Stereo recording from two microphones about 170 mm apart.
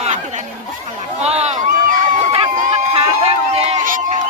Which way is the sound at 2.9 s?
35° right (ahead or behind).